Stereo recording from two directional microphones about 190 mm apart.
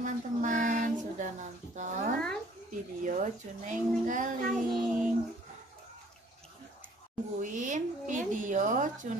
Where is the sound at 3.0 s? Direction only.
40° right (ahead or behind).